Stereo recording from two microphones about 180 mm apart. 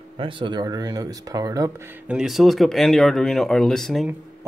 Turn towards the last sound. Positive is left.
turn(degrees=0)  # may be behind; listen again after turning